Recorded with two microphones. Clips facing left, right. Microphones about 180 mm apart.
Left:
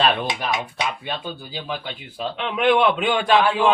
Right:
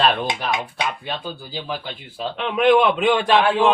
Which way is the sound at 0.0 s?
Centre (ahead or behind).